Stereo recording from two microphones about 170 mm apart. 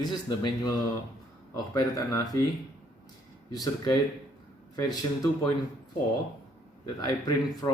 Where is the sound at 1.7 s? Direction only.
15° left (ahead or behind).